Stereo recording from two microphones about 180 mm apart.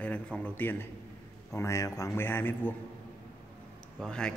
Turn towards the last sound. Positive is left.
turn(degrees=5)  # may be behind; listen again after turning